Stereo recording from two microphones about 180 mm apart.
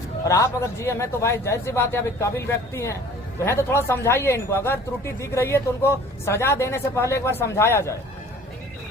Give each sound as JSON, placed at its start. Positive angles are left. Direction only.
{"t": 0.3, "sound": "speech", "side_deg": 15}